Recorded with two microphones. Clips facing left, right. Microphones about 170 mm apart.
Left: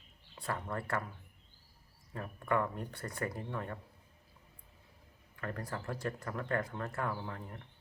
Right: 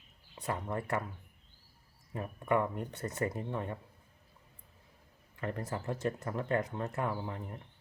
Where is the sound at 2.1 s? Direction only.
15° right (ahead or behind).